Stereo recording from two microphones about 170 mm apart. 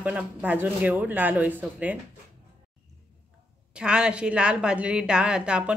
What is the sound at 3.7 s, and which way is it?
A woman's voice, 5° right (ahead or behind).